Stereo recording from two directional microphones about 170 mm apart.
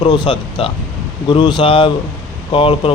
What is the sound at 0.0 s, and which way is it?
Speech, 25° left (ahead or behind).